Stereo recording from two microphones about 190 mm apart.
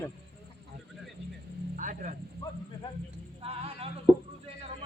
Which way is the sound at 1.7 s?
45° right (ahead or behind).